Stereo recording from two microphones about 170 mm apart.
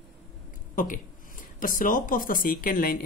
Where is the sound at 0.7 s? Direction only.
50° left (ahead or behind).